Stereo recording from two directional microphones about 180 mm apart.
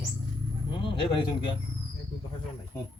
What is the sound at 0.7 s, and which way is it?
Speech, 25° left (ahead or behind).